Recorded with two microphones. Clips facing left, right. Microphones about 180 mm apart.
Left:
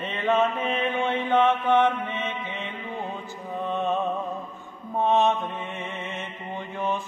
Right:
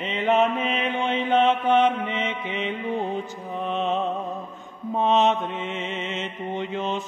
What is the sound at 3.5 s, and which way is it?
Music, 20° right (ahead or behind).